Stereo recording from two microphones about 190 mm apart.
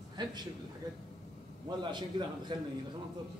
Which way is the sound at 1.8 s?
25° right (ahead or behind).